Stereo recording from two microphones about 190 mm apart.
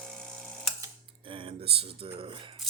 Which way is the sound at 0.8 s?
25° right (ahead or behind).